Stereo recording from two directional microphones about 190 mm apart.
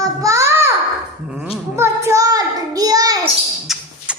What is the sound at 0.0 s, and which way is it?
Child singing, 15° right (ahead or behind).